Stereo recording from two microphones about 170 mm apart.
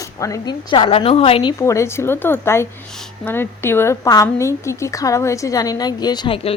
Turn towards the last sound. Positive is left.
turn(degrees=30)  # may be behind; listen again after turning